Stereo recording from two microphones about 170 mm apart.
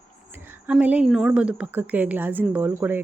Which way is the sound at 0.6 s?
10° right (ahead or behind).